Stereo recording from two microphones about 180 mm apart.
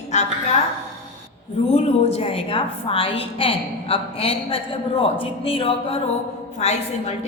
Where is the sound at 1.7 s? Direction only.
35° left (ahead or behind).